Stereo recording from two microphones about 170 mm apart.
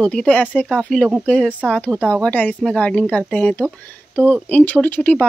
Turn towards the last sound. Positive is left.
turn(degrees=10)  # may be behind; listen again after turning